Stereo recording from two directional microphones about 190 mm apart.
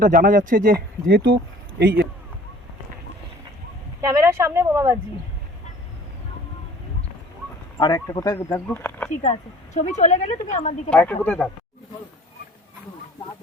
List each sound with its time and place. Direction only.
0.0 s speech: 45° right (ahead or behind)
4.0 s a woman's voice: 15° right (ahead or behind)
7.8 s speech: 20° left (ahead or behind)
9.2 s a woman's voice: 40° left (ahead or behind)
10.8 s speech: 5° left (ahead or behind)